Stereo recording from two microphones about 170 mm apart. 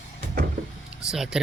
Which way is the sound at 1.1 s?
5° right (ahead or behind).